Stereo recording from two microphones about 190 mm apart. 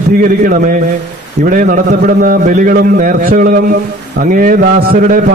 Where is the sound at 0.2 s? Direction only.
45° right (ahead or behind).